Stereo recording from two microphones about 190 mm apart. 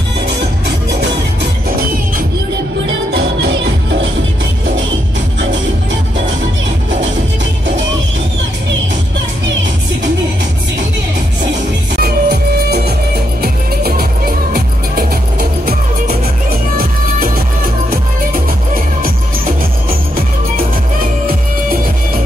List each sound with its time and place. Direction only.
12.0 s music: 55° right (ahead or behind)
16.4 s music: 50° right (ahead or behind)
19.0 s music: 50° right (ahead or behind)